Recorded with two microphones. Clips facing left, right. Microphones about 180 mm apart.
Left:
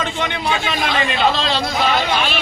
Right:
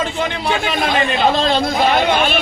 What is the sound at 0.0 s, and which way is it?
Speech, 35° right (ahead or behind).